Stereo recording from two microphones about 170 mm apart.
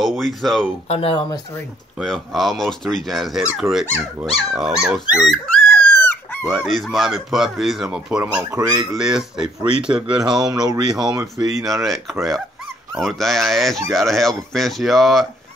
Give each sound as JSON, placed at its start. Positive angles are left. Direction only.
{"t": 0.0, "sound": "speech", "side_deg": 0}
{"t": 0.8, "sound": "speech", "side_deg": 35}
{"t": 2.0, "sound": "speech", "side_deg": 0}
{"t": 4.2, "sound": "dog", "side_deg": 0}
{"t": 6.5, "sound": "speech", "side_deg": 0}
{"t": 8.5, "sound": "speech", "side_deg": -20}
{"t": 8.9, "sound": "speech", "side_deg": -5}
{"t": 10.5, "sound": "speech", "side_deg": -25}
{"t": 11.0, "sound": "speech", "side_deg": -5}
{"t": 11.3, "sound": "speech", "side_deg": -20}
{"t": 11.6, "sound": "speech", "side_deg": 0}